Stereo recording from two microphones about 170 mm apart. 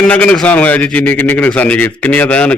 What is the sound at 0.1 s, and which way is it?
A man's voice, 10° left (ahead or behind).